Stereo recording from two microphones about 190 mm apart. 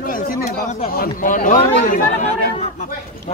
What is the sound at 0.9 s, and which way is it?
Speech, 50° left (ahead or behind).